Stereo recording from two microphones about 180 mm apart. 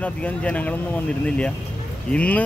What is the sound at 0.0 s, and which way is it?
Speech, 5° left (ahead or behind).